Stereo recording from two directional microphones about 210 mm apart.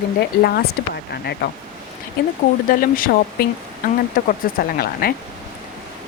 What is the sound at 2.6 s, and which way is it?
Speech, 40° left (ahead or behind).